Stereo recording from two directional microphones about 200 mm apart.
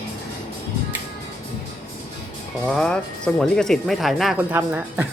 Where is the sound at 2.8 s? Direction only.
5° left (ahead or behind).